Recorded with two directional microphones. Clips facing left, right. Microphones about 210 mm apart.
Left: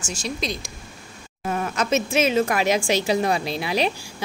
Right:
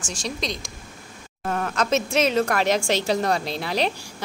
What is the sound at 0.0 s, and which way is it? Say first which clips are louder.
A woman's voice: left 1 dB; centre (ahead or behind).